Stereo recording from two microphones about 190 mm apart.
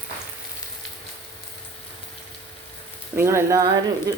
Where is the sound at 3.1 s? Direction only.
15° right (ahead or behind).